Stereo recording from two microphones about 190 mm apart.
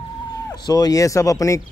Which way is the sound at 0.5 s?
20° left (ahead or behind).